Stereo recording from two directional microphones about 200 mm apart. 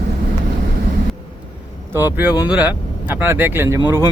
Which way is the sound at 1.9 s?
10° right (ahead or behind).